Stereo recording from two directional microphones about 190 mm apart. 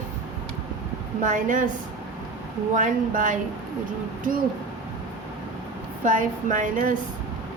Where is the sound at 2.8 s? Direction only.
45° right (ahead or behind).